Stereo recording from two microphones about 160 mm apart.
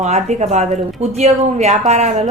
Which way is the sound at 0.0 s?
45° right (ahead or behind).